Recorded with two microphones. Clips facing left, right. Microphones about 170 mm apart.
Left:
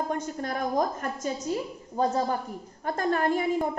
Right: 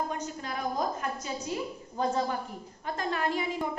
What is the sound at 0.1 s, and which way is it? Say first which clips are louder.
A woman's voice: left 5 dB; 50° left (ahead or behind).